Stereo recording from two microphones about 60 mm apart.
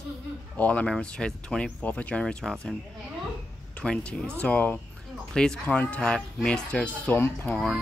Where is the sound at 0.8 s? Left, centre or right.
Centre.